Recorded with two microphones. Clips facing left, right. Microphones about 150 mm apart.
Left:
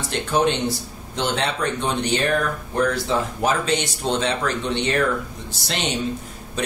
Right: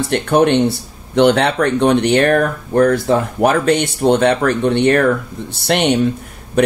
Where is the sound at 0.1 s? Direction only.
60° right (ahead or behind).